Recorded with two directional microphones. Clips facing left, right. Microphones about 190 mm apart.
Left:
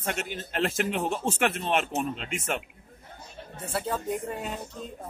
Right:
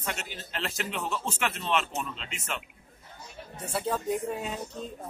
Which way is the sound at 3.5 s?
Centre (ahead or behind).